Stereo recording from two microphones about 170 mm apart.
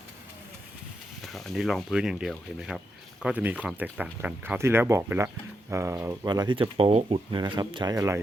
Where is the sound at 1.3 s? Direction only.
Centre (ahead or behind).